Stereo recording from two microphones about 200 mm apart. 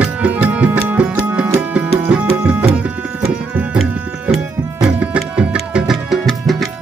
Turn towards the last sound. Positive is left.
turn(degrees=0)  # may be behind; listen again after turning